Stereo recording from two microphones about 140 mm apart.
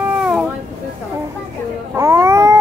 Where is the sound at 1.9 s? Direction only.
20° right (ahead or behind).